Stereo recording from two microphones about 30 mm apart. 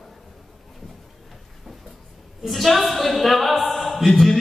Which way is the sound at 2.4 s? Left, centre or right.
Centre.